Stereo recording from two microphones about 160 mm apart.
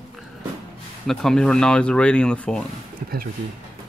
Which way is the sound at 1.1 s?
5° left (ahead or behind).